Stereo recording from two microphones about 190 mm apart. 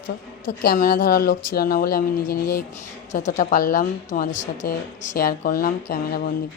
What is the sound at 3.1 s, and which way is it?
Speech, 40° left (ahead or behind).